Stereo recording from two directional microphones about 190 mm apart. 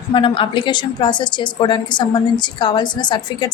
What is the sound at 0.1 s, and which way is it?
A woman's voice, 25° left (ahead or behind).